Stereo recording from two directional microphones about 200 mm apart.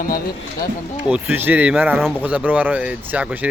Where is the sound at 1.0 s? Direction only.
5° right (ahead or behind).